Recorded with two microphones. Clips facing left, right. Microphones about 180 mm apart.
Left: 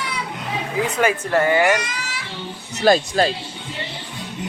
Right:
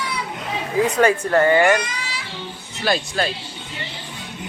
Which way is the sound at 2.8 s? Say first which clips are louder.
Left 6 dB; 40° left (ahead or behind).